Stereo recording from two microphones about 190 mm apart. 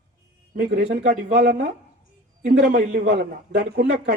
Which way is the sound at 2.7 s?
40° right (ahead or behind).